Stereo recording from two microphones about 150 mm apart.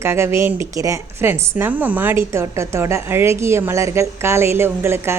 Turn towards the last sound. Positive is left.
turn(degrees=-15)  # may be behind; listen again after turning